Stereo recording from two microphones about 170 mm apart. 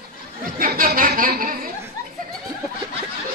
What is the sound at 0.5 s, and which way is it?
Speech, 55° right (ahead or behind).